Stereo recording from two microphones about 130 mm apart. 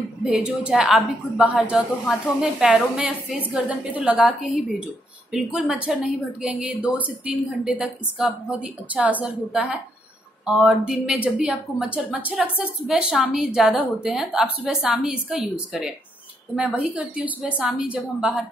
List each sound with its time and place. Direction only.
0.2 s a woman's voice: 5° right (ahead or behind)